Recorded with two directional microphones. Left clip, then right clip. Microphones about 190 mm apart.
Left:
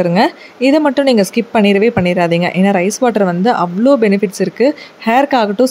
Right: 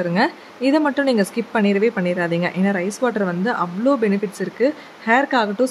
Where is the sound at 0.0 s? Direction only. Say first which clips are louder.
Left 7 dB; 30° left (ahead or behind).